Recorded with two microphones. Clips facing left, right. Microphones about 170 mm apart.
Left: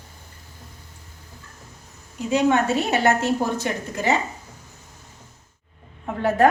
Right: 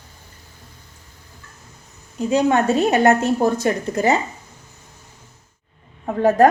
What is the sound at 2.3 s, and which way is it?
A woman's voice, 35° right (ahead or behind).